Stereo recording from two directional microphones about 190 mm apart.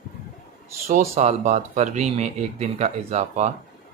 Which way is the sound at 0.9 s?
40° right (ahead or behind).